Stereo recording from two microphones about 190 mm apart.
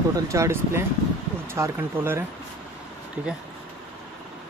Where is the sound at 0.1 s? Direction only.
15° right (ahead or behind).